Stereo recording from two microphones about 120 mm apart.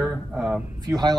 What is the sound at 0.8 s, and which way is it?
Speech, 35° right (ahead or behind).